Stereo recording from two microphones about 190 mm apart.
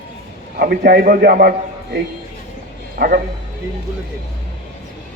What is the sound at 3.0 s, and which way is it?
Speech, 50° right (ahead or behind).